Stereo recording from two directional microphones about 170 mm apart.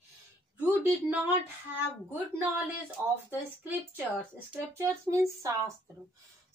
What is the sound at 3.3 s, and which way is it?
A woman's voice, 10° right (ahead or behind).